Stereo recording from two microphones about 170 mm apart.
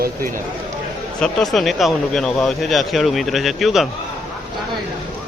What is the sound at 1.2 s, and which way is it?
Speech, centre (ahead or behind).